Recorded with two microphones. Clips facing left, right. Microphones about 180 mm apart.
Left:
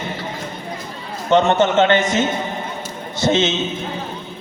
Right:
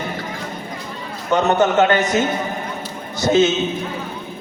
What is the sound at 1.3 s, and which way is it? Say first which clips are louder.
A man's voice: left 1 dB; 25° left (ahead or behind).